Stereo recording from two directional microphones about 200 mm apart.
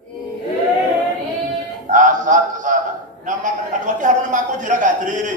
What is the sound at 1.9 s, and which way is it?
Mantra, 40° right (ahead or behind).